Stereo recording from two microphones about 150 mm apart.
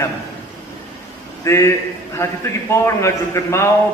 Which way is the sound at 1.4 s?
20° left (ahead or behind).